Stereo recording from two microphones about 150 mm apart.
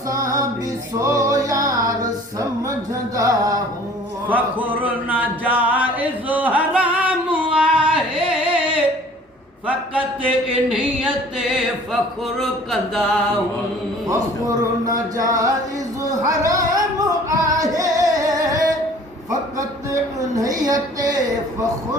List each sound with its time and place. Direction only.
0.9 s music: 20° right (ahead or behind)
3.2 s a sound: 25° right (ahead or behind)
4.3 s a sound: 10° right (ahead or behind)
9.6 s chant: 10° right (ahead or behind)
12.4 s mantra: centre (ahead or behind)
14.1 s speech: 20° right (ahead or behind)
16.2 s music: 20° right (ahead or behind)
20.3 s speech: 25° right (ahead or behind)